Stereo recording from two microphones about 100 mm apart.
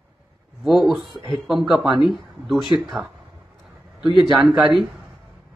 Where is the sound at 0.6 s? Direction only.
Centre (ahead or behind).